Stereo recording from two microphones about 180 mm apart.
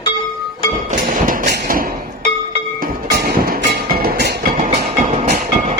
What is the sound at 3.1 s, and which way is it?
Music, 55° right (ahead or behind).